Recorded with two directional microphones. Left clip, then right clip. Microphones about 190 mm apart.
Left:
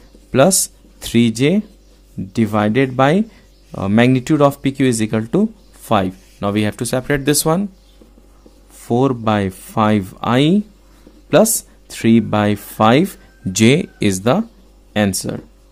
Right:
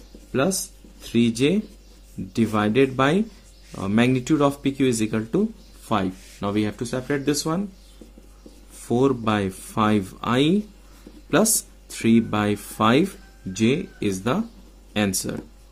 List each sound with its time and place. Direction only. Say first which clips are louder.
0.3 s speech: left 10 dB; 50° left (ahead or behind)
8.7 s speech: left 4 dB; 30° left (ahead or behind)
13.5 s speech: left 9 dB; 55° left (ahead or behind); by 15.3 s 35° left (ahead or behind)